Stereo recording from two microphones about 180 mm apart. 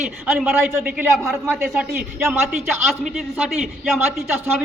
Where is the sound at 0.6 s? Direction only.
10° right (ahead or behind).